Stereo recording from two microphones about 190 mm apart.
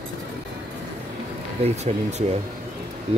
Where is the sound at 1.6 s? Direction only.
35° right (ahead or behind).